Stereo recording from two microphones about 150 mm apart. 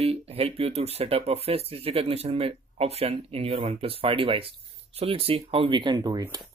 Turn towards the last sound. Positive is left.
turn(degrees=-25)  # may be behind; listen again after turning